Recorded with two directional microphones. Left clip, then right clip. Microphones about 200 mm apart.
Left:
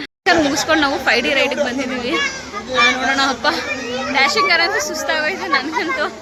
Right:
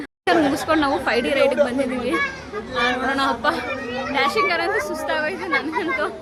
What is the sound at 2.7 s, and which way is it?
A man's voice, 10° left (ahead or behind).